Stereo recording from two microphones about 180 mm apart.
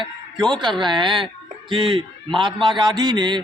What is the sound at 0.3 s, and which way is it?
Speech, 5° left (ahead or behind).